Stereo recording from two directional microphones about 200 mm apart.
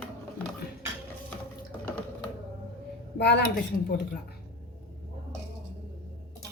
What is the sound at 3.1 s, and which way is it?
Speech, 55° left (ahead or behind).